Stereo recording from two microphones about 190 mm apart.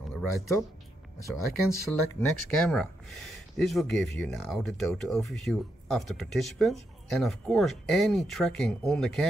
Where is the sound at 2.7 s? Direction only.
Centre (ahead or behind).